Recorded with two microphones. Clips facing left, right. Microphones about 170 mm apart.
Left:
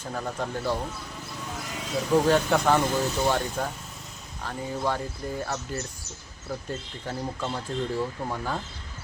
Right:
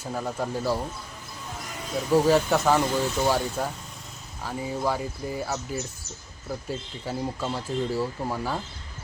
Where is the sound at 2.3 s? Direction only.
5° right (ahead or behind).